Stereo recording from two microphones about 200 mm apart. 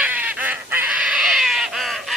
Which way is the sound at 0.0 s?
10° right (ahead or behind).